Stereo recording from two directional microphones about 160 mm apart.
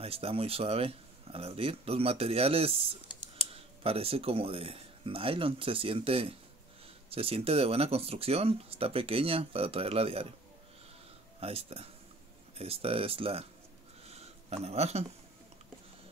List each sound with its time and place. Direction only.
0.0 s speech: 35° right (ahead or behind)
11.3 s speech: 40° right (ahead or behind)
14.0 s a sound: 40° right (ahead or behind)